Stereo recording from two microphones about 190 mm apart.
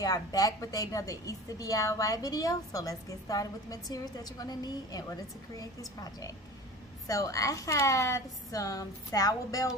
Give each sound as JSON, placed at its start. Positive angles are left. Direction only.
{"t": 0.0, "sound": "a woman's voice", "side_deg": 20}